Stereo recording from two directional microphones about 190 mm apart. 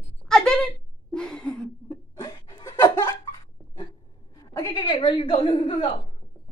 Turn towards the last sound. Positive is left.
turn(degrees=25)  # may be behind; listen again after turning